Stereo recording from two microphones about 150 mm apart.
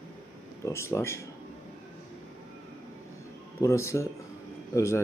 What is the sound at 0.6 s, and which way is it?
Speech, 20° left (ahead or behind).